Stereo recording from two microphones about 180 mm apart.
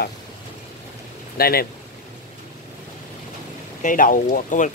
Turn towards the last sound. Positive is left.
turn(degrees=45)  # may be behind; listen again after turning